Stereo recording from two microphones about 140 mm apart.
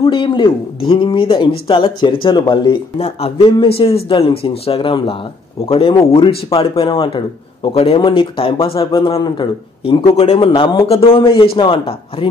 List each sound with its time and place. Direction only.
0.0 s speech: 40° left (ahead or behind)
3.0 s speech: 45° left (ahead or behind)